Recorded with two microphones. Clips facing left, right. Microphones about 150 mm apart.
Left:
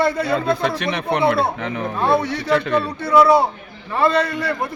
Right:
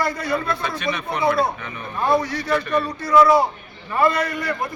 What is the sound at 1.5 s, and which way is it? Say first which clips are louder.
Speech: left 6 dB; 90° left.